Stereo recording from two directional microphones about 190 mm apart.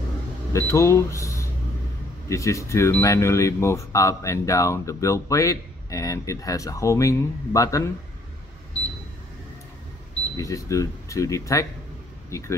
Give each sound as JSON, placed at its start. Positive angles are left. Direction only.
{"t": 0.5, "sound": "speech", "side_deg": 15}
{"t": 10.3, "sound": "speech", "side_deg": 15}